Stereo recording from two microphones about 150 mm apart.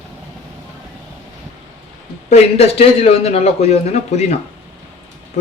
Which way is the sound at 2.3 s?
45° left (ahead or behind).